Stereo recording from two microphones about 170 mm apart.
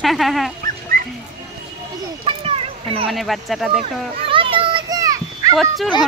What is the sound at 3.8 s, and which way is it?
Children playing, 30° right (ahead or behind).